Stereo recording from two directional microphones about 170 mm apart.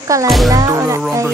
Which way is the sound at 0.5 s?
20° right (ahead or behind).